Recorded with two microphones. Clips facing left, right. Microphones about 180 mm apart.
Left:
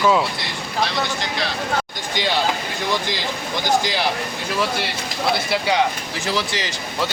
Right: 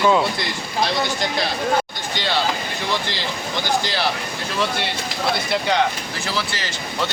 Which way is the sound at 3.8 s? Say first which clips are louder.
Left 1 dB; 15° left (ahead or behind).